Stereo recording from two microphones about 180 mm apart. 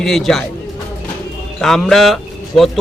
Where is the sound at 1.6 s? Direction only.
Centre (ahead or behind).